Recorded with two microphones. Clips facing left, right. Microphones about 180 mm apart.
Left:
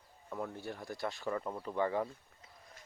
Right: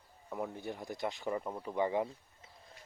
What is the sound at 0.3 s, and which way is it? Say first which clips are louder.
Speech: right 1 dB; 15° right (ahead or behind).